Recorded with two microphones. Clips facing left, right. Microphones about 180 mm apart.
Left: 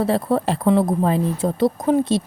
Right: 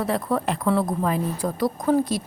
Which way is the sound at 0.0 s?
30° left (ahead or behind).